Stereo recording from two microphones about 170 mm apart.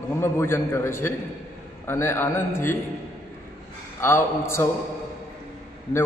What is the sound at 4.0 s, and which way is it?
Speech, 15° left (ahead or behind).